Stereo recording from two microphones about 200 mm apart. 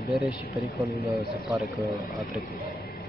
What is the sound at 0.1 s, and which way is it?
Speech, centre (ahead or behind).